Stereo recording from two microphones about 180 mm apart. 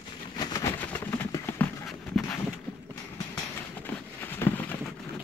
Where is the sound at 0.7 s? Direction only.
10° left (ahead or behind).